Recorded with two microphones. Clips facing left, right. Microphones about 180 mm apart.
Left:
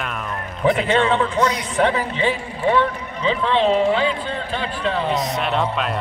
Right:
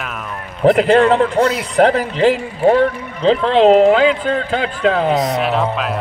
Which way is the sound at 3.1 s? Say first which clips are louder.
Right 7 dB; 90° right.